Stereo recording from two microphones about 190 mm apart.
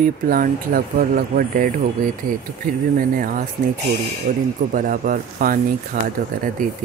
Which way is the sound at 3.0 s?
45° right (ahead or behind).